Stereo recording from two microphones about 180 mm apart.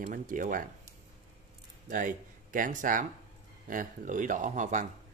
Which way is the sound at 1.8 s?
50° right (ahead or behind).